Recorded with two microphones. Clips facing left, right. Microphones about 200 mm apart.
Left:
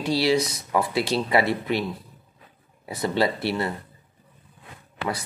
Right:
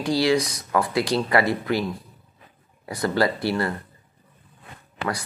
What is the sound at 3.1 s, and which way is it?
Speech, 25° left (ahead or behind).